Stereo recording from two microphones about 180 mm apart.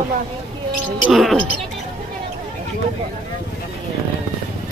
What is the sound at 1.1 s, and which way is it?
Speech, centre (ahead or behind).